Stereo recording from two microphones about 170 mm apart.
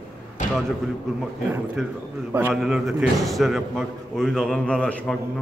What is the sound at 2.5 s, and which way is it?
A man's voice, centre (ahead or behind).